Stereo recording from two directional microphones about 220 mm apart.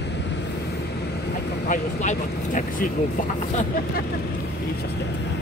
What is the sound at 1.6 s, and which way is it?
Speech, 35° left (ahead or behind).